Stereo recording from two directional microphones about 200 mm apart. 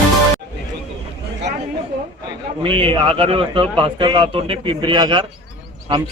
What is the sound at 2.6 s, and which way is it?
A man's voice, 25° right (ahead or behind).